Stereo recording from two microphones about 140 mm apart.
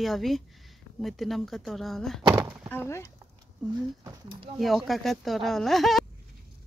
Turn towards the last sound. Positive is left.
turn(degrees=0)  # may be behind; listen again after turning